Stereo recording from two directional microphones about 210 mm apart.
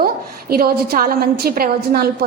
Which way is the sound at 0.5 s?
45° right (ahead or behind).